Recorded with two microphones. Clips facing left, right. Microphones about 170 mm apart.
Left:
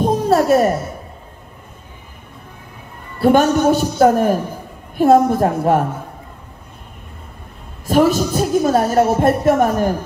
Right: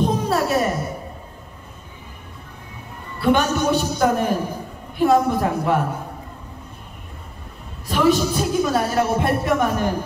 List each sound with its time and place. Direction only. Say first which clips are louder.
0.0 s a sound: left 5 dB; 45° left (ahead or behind)
3.2 s speech: left 6 dB; 45° left (ahead or behind)
7.8 s speech: left 4 dB; 45° left (ahead or behind)